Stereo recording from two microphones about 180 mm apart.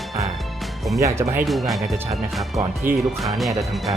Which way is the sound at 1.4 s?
Centre (ahead or behind).